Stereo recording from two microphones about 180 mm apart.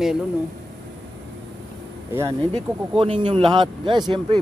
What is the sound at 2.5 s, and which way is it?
Speech, 30° right (ahead or behind).